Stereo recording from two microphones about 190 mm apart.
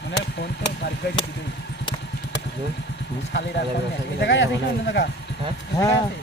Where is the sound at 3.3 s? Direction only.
70° left (ahead or behind).